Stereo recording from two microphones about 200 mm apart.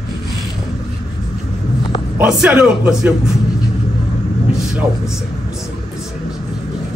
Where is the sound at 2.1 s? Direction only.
5° right (ahead or behind).